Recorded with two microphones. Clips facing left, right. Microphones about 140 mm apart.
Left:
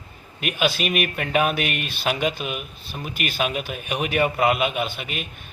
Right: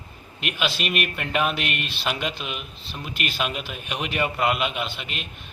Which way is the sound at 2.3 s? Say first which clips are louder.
Left 4 dB; 50° left (ahead or behind).